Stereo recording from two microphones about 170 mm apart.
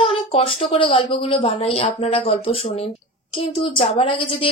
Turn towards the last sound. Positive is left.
turn(degrees=35)  # may be behind; listen again after turning